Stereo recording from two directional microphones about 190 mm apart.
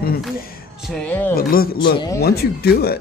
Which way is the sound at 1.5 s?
50° left (ahead or behind).